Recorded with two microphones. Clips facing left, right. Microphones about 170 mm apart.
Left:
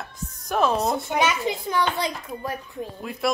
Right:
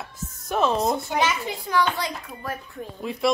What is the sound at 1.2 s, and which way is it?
A child's voice, 20° left (ahead or behind).